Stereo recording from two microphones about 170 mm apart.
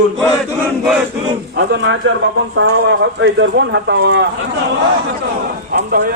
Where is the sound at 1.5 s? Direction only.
90° right.